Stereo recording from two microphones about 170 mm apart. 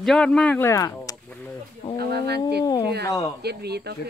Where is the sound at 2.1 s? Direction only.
75° right (ahead or behind).